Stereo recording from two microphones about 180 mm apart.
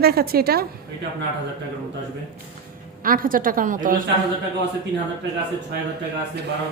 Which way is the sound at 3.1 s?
50° right (ahead or behind).